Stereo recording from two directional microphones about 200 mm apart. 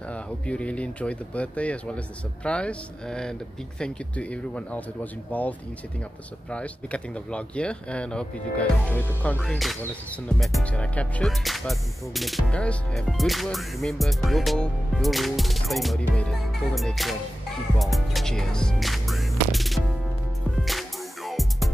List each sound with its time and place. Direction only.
0.1 s speech: 5° left (ahead or behind)
2.4 s music: 5° left (ahead or behind)
5.3 s speech: 10° left (ahead or behind)
6.5 s music: 5° left (ahead or behind)